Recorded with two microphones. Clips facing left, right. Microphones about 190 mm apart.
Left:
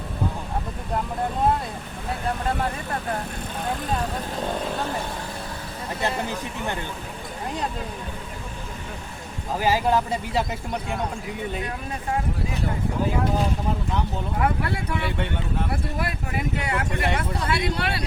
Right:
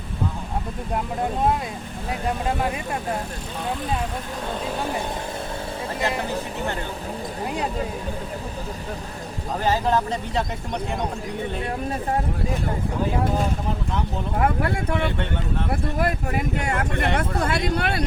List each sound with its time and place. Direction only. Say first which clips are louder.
9.6 s speech: even; 10° left (ahead or behind)
14.3 s speech: right 3 dB; 50° right (ahead or behind)